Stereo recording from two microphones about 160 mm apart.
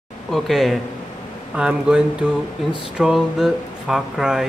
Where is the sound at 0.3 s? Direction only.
Centre (ahead or behind).